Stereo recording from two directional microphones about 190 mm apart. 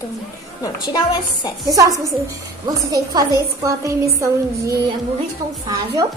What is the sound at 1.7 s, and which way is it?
A woman's voice, 20° right (ahead or behind).